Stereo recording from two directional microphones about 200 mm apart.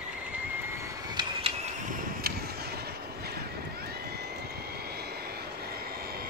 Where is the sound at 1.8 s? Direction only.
50° right (ahead or behind).